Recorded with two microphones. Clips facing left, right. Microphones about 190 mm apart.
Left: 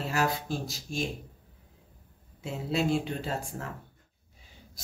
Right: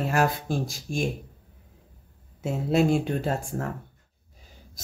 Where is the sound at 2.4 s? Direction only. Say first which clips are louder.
Right 7 dB; 50° right (ahead or behind).